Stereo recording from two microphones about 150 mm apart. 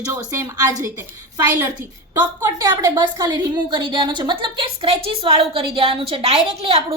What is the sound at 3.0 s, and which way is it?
A woman's voice, 30° right (ahead or behind).